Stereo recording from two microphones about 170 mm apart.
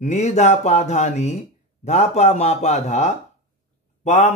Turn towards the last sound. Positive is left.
turn(degrees=40)  # may be behind; listen again after turning